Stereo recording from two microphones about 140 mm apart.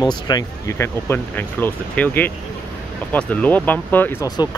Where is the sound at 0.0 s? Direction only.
30° left (ahead or behind).